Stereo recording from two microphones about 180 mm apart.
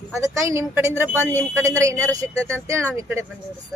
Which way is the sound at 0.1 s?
15° right (ahead or behind).